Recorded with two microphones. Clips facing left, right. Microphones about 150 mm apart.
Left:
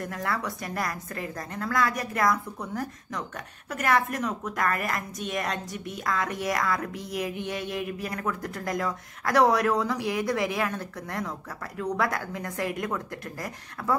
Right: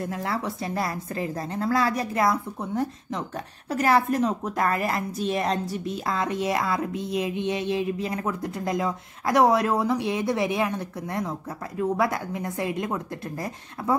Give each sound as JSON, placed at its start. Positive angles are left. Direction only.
{"t": 0.0, "sound": "a woman's voice", "side_deg": -25}